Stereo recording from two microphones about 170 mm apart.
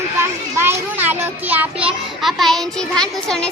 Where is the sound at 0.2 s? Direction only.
15° right (ahead or behind).